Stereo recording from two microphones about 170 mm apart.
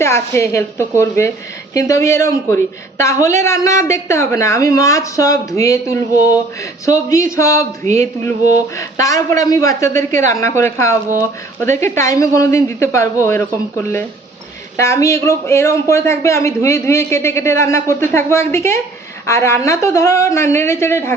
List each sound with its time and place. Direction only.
0.0 s a man's voice: 15° left (ahead or behind)
8.8 s a man's voice: 20° left (ahead or behind)